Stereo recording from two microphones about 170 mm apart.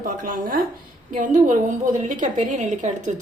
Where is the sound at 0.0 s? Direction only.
55° right (ahead or behind).